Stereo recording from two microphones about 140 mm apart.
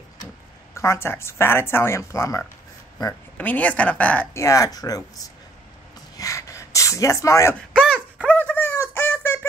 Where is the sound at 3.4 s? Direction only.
10° left (ahead or behind).